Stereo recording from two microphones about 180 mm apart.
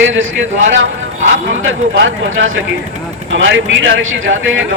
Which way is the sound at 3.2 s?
90° right.